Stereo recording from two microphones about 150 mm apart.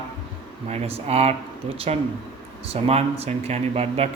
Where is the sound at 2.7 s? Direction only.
45° right (ahead or behind).